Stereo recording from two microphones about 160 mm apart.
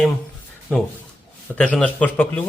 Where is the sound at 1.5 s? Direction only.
5° left (ahead or behind).